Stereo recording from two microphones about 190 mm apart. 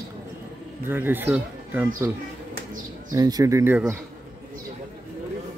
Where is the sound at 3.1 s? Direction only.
20° right (ahead or behind).